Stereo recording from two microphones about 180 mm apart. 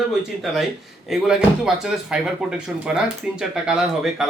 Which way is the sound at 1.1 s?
5° right (ahead or behind).